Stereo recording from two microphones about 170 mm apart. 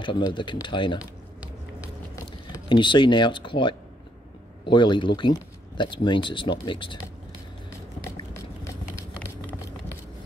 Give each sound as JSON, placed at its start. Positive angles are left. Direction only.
{"t": 0.0, "sound": "speech", "side_deg": 30}
{"t": 2.7, "sound": "speech", "side_deg": 30}